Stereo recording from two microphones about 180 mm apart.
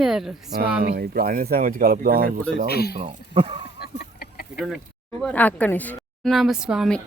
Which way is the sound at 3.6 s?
65° left (ahead or behind).